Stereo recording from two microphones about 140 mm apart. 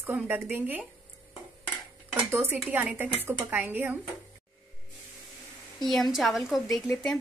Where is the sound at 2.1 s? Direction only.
15° right (ahead or behind).